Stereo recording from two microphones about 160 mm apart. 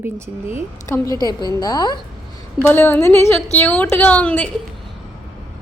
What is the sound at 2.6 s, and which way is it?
A woman's voice, 10° left (ahead or behind).